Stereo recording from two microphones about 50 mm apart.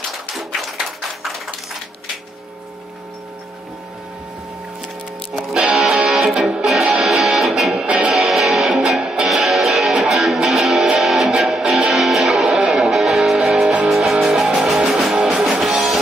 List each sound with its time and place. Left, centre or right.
0.7 s a sound: centre
5.3 s music: centre
7.7 s music: right
8.1 s music: centre
9.3 s music: centre
11.9 s music: centre
14.8 s music: centre
15.6 s music: centre